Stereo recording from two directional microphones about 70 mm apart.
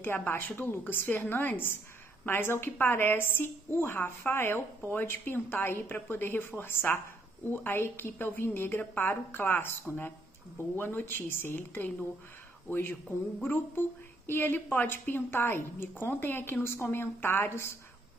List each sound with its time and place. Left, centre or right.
0.0 s a woman's voice: left